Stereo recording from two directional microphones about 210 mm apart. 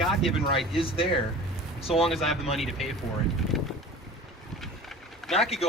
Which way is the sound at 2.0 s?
Centre (ahead or behind).